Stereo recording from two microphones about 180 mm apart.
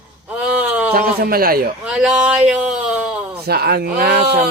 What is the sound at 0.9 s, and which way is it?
Speech, 55° right (ahead or behind).